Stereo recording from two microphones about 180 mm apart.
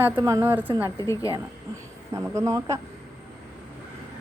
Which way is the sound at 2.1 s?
15° right (ahead or behind).